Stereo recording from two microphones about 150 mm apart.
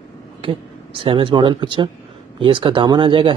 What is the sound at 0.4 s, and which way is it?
Speech, 35° right (ahead or behind).